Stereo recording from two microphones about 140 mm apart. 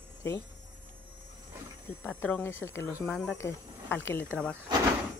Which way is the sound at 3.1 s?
5° left (ahead or behind).